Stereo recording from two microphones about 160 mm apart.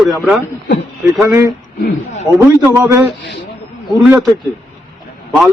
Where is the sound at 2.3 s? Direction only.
15° left (ahead or behind).